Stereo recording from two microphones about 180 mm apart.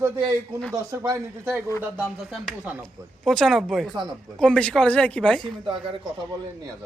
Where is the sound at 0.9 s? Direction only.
20° right (ahead or behind).